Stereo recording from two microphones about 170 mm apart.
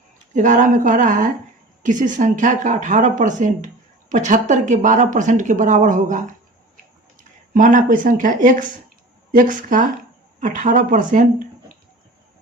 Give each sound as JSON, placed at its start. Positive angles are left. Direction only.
{"t": 0.3, "sound": "speech", "side_deg": -45}
{"t": 7.5, "sound": "speech", "side_deg": -50}